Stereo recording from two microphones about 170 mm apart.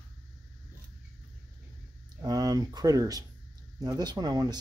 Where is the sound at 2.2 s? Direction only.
20° right (ahead or behind).